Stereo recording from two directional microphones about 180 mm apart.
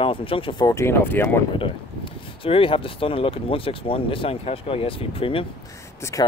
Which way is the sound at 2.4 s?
30° left (ahead or behind).